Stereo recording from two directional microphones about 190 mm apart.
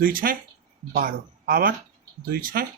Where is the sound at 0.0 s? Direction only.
50° right (ahead or behind).